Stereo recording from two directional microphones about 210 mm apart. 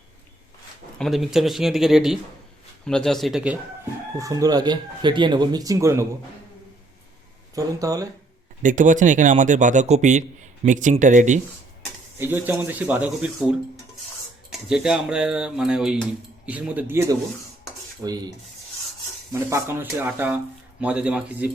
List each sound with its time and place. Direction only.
0.9 s speech: centre (ahead or behind)
4.2 s speech: 15° right (ahead or behind)
7.5 s speech: 15° right (ahead or behind)
8.6 s a man's voice: 35° right (ahead or behind)
12.2 s speech: 10° right (ahead or behind)
14.7 s speech: 5° right (ahead or behind)